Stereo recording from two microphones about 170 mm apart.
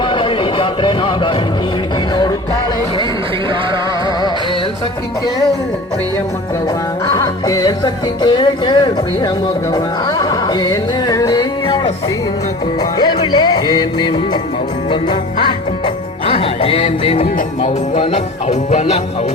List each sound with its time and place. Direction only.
0.0 s a sound: 30° left (ahead or behind)
7.1 s music: 20° left (ahead or behind)
12.8 s music: 25° left (ahead or behind); by 18.9 s 40° left (ahead or behind)